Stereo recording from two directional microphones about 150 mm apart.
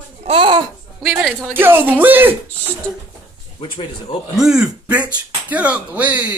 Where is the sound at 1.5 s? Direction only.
15° right (ahead or behind).